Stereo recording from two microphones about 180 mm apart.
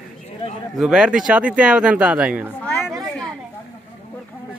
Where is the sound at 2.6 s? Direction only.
5° left (ahead or behind).